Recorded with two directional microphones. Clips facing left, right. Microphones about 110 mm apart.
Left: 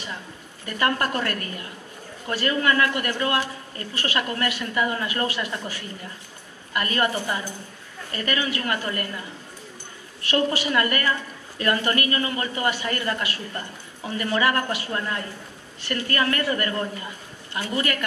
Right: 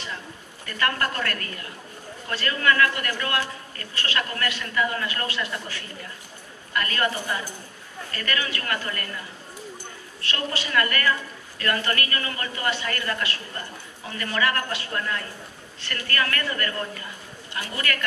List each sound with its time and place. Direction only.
0.7 s a man's voice: 20° left (ahead or behind)
10.3 s a man's voice: 20° left (ahead or behind)